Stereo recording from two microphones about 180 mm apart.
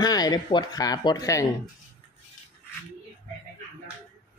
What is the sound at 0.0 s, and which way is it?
Speech, 20° left (ahead or behind).